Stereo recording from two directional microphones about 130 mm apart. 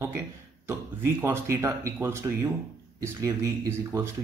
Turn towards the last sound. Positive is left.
turn(degrees=-20)  # may be behind; listen again after turning